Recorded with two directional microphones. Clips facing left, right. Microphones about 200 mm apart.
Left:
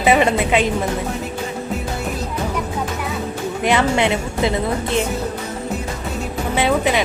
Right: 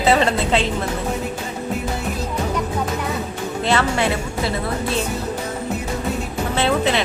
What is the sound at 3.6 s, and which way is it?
Speech, 15° left (ahead or behind).